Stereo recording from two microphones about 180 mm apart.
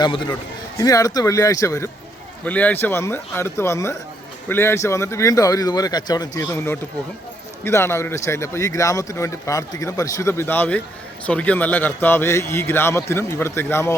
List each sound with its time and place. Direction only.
0.0 s a man's voice: 25° left (ahead or behind)